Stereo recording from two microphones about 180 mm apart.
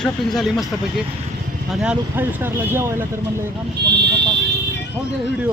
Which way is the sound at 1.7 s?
5° right (ahead or behind).